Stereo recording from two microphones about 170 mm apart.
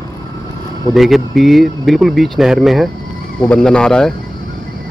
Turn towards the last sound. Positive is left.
turn(degrees=5)  # may be behind; listen again after turning